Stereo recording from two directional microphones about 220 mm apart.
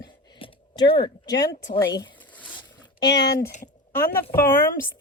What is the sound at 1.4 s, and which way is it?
Speech, 15° left (ahead or behind).